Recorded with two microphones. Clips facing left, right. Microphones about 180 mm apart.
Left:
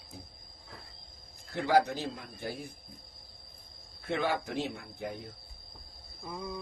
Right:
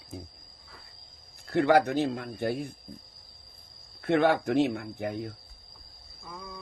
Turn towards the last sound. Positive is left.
turn(degrees=20)  # may be behind; listen again after turning